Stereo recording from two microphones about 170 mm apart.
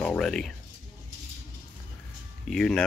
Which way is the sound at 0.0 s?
5° left (ahead or behind).